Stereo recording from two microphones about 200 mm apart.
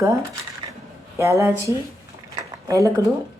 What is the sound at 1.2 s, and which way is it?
Speech, 15° right (ahead or behind).